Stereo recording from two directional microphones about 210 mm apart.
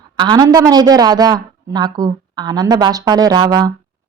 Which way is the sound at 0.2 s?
20° right (ahead or behind).